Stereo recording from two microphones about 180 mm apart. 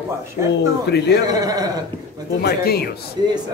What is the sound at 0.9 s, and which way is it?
Speech, 65° left (ahead or behind).